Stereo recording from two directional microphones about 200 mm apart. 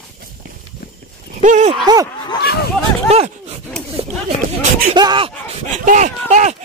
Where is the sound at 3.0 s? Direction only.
30° right (ahead or behind).